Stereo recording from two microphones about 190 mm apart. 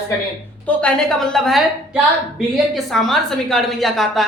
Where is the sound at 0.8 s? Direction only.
5° left (ahead or behind).